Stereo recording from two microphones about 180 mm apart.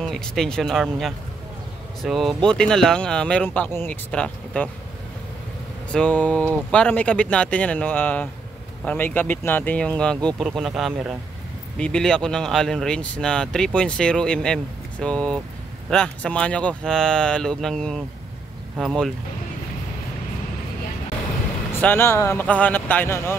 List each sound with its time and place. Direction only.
0.0 s speech: 5° left (ahead or behind)
5.9 s speech: 5° left (ahead or behind)
21.7 s speech: 10° left (ahead or behind)